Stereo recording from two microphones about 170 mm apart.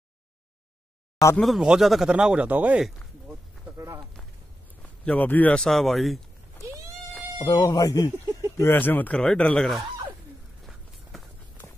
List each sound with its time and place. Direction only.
1.3 s speech: centre (ahead or behind)
3.7 s speech: 20° right (ahead or behind)
5.0 s speech: 10° left (ahead or behind)
7.3 s speech: 25° left (ahead or behind); by 9.8 s 5° left (ahead or behind)
10.7 s walk: centre (ahead or behind)